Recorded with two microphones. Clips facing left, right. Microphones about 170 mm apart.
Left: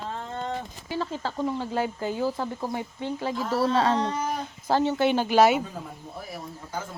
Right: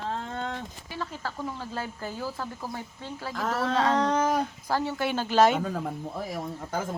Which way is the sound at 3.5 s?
30° left (ahead or behind).